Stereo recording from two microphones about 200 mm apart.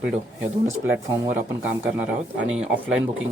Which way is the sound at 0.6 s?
15° right (ahead or behind).